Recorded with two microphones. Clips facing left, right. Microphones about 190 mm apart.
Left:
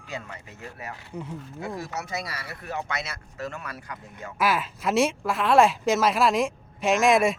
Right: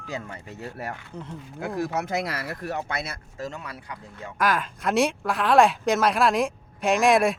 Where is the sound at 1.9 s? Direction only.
55° right (ahead or behind).